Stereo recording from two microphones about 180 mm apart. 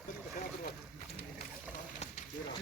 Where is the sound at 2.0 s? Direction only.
40° left (ahead or behind).